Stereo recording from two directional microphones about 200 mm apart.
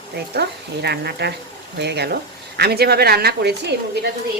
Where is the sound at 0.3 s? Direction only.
55° right (ahead or behind).